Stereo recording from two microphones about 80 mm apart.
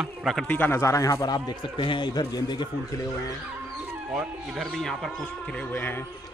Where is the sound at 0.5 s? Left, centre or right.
Left.